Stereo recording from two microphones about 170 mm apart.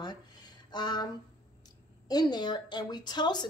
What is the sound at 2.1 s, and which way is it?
Speech, 25° left (ahead or behind).